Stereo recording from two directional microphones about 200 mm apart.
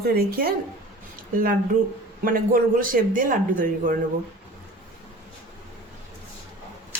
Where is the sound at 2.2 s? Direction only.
45° right (ahead or behind).